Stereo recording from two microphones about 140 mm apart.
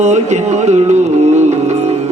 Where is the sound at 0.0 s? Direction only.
55° right (ahead or behind).